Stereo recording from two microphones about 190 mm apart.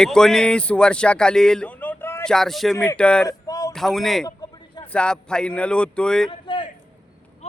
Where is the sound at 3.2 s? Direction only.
20° left (ahead or behind).